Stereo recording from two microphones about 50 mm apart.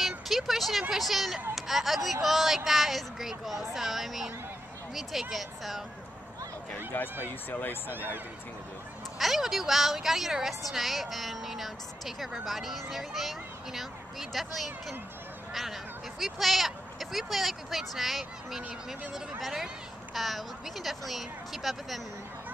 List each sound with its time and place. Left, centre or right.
0.3 s speech: centre
5.3 s speech: centre
6.9 s speech: left
9.2 s speech: centre